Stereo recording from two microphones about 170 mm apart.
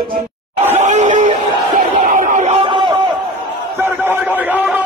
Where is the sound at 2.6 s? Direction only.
25° right (ahead or behind).